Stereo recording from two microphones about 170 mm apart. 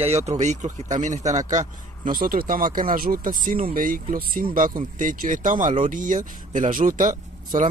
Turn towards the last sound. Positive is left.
turn(degrees=-50)  # may be behind; listen again after turning